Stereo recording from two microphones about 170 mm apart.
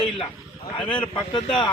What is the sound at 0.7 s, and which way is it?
Speech, 30° left (ahead or behind).